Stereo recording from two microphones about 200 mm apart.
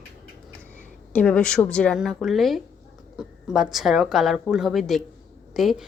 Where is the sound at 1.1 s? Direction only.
5° left (ahead or behind).